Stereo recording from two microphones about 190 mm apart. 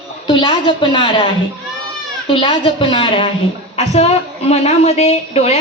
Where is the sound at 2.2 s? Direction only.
25° left (ahead or behind).